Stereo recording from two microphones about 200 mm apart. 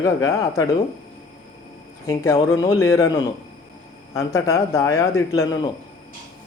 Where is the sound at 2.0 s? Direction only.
15° left (ahead or behind).